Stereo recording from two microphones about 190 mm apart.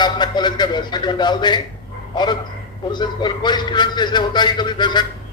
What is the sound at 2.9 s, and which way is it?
A man's voice, 25° left (ahead or behind).